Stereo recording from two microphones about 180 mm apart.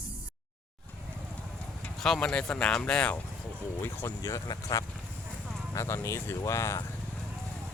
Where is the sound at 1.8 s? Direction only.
5° left (ahead or behind).